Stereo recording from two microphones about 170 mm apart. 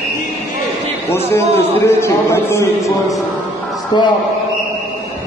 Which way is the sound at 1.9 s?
15° left (ahead or behind).